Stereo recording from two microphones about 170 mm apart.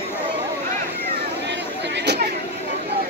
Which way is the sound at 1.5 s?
90° right.